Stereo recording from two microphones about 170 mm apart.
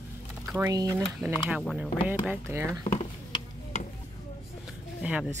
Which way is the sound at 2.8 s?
35° left (ahead or behind).